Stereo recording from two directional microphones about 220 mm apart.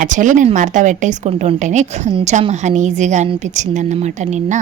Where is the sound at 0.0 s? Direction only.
35° right (ahead or behind).